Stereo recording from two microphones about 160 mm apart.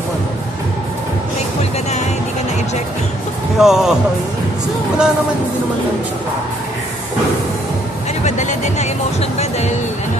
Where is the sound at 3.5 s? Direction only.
5° right (ahead or behind).